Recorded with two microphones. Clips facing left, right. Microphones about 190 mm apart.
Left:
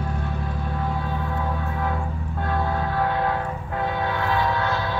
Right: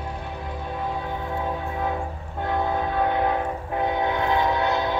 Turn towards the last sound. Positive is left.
turn(degrees=-20)  # may be behind; listen again after turning